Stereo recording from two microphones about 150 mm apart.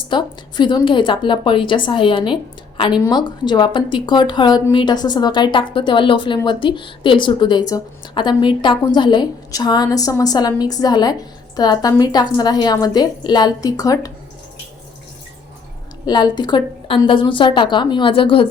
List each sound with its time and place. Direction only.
0.1 s a woman's voice: 30° left (ahead or behind)
16.0 s a woman's voice: 30° left (ahead or behind)